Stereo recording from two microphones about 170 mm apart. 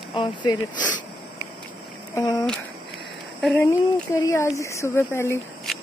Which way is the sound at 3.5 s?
15° left (ahead or behind).